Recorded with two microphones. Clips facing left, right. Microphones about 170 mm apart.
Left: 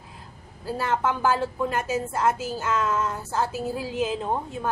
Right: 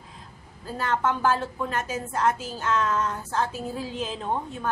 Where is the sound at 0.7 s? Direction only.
10° left (ahead or behind).